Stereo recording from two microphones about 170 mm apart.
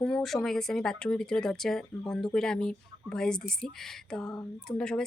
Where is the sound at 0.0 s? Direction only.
Centre (ahead or behind).